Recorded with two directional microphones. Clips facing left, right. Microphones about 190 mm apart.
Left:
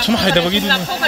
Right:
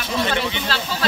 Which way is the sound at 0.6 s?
45° left (ahead or behind).